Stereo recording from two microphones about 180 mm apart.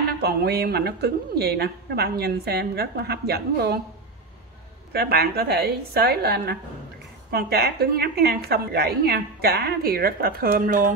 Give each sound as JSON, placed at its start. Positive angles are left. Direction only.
{"t": 0.2, "sound": "a woman's voice", "side_deg": -65}
{"t": 4.9, "sound": "a woman's voice", "side_deg": -60}